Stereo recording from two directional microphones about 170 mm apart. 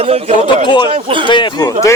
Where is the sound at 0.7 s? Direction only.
25° left (ahead or behind).